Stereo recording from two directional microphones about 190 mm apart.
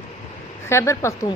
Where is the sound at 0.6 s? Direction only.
15° left (ahead or behind).